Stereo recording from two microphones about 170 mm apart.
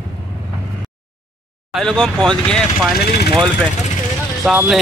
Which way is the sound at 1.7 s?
Centre (ahead or behind).